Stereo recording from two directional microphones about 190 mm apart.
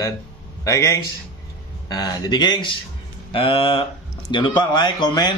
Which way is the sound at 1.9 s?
20° left (ahead or behind).